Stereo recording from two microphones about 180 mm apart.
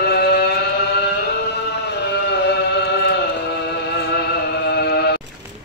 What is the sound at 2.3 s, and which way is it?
Chant, 70° left (ahead or behind).